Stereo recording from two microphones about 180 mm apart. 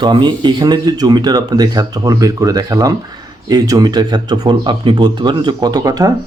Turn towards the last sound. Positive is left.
turn(degrees=-20)  # may be behind; listen again after turning